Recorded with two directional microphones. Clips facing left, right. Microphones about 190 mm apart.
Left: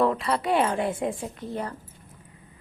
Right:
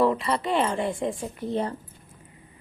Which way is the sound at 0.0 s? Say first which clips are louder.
Right 1 dB; centre (ahead or behind).